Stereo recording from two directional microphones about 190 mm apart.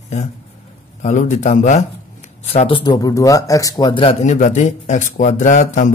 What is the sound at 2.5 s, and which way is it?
Speech, 30° left (ahead or behind).